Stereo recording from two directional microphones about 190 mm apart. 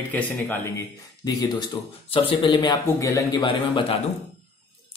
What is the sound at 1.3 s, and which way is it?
A man's voice, 20° left (ahead or behind).